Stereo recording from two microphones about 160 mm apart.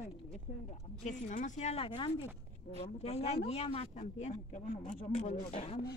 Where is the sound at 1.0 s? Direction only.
50° left (ahead or behind).